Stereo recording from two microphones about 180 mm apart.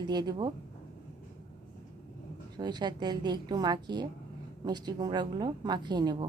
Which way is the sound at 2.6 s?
25° right (ahead or behind).